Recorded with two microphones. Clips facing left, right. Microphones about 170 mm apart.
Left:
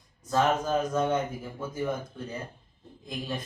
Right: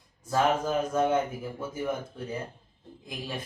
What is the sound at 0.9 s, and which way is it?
Speech, 10° right (ahead or behind).